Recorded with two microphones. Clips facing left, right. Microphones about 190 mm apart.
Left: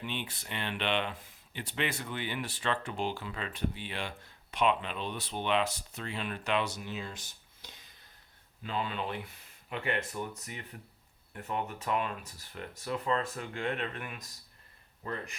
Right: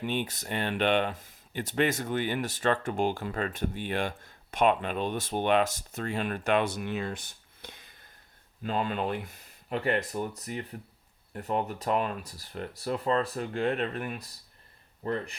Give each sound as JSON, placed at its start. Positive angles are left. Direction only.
{"t": 0.0, "sound": "speech", "side_deg": -45}
{"t": 8.6, "sound": "speech", "side_deg": -45}